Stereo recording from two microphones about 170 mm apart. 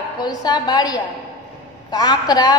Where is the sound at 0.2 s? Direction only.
25° left (ahead or behind).